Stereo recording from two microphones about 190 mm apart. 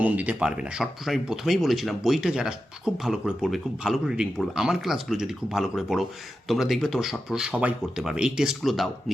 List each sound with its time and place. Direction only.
0.0 s speech: 10° right (ahead or behind)